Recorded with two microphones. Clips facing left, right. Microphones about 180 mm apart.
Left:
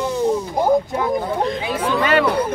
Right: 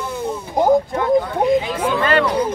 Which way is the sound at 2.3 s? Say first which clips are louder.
Even; 60° left (ahead or behind).